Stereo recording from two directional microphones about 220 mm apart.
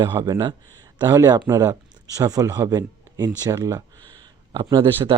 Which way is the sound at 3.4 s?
15° right (ahead or behind).